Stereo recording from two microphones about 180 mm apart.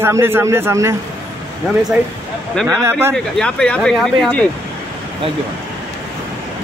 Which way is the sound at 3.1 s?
5° left (ahead or behind).